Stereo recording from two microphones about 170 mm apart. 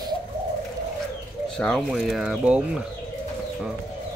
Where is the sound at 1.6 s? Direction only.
5° left (ahead or behind).